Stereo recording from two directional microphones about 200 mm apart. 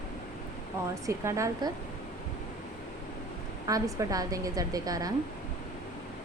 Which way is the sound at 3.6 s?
15° right (ahead or behind).